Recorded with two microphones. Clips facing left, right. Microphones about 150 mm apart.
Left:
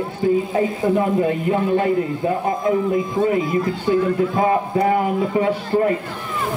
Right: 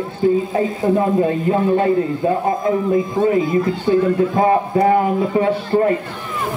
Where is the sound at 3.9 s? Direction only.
35° right (ahead or behind).